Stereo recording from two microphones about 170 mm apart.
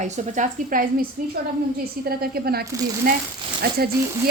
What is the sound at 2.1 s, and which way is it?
Speech, 65° right (ahead or behind).